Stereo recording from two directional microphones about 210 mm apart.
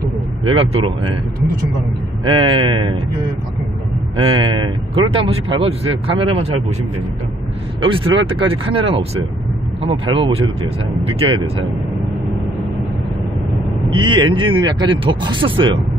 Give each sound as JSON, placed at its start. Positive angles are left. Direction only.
{"t": 0.5, "sound": "speech", "side_deg": -25}
{"t": 2.2, "sound": "speech", "side_deg": -25}
{"t": 4.2, "sound": "speech", "side_deg": -25}
{"t": 7.8, "sound": "speech", "side_deg": -25}
{"t": 13.9, "sound": "speech", "side_deg": -20}